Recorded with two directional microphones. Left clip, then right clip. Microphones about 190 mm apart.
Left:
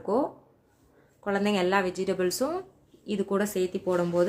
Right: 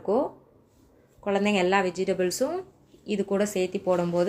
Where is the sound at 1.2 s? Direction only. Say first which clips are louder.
Right 2 dB; centre (ahead or behind).